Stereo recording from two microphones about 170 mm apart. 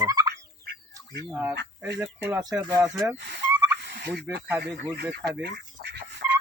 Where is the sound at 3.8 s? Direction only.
75° right (ahead or behind).